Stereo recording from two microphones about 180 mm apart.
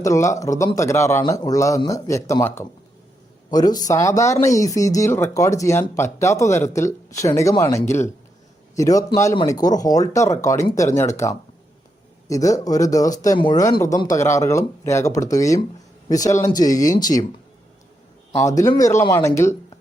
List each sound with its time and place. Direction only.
0.0 s speech: 15° left (ahead or behind)
18.4 s speech: 15° left (ahead or behind)